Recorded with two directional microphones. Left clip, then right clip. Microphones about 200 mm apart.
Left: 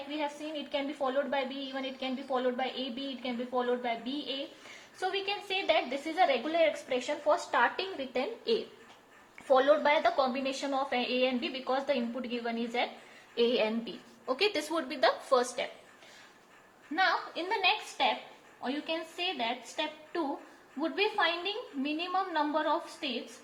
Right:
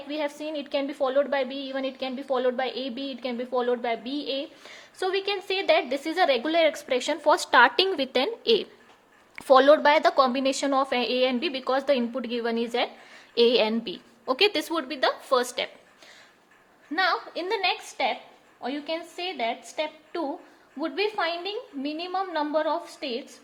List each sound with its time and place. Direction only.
0.1 s a woman's voice: 50° right (ahead or behind)
16.9 s a woman's voice: 50° right (ahead or behind)